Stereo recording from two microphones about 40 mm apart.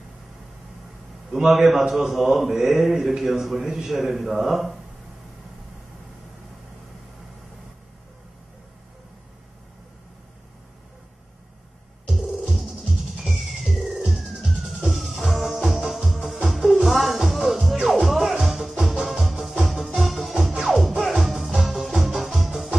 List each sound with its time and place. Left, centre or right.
1.3 s a man's voice: centre
12.1 s music: centre